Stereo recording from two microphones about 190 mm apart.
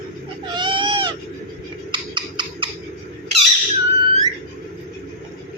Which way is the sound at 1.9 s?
25° right (ahead or behind).